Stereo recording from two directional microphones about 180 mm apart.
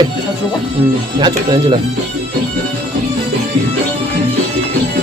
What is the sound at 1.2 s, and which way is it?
Speech, 25° right (ahead or behind).